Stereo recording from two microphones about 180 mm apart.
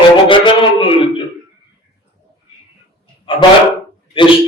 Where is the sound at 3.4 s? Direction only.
25° left (ahead or behind).